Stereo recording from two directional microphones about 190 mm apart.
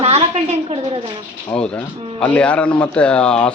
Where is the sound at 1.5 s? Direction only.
10° left (ahead or behind).